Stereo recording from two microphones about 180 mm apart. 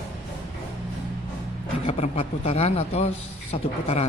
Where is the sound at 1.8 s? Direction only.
35° left (ahead or behind).